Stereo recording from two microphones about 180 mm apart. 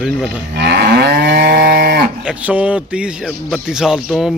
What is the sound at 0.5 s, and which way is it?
Moo, 65° right (ahead or behind).